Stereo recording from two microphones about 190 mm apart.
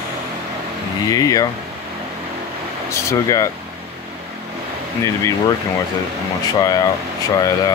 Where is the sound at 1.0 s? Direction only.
20° left (ahead or behind).